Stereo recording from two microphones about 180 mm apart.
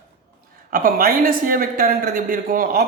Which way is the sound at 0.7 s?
50° right (ahead or behind).